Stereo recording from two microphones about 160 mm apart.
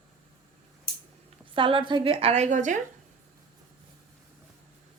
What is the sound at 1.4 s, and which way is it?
A woman's voice, 30° right (ahead or behind).